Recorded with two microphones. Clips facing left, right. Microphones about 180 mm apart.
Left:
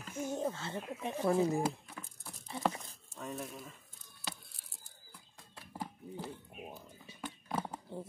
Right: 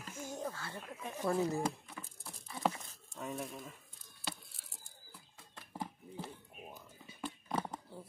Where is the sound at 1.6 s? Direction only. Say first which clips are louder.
Left 2 dB; centre (ahead or behind).